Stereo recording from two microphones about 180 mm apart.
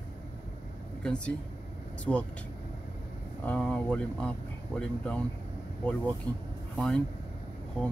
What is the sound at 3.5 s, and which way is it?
Speech, 5° left (ahead or behind).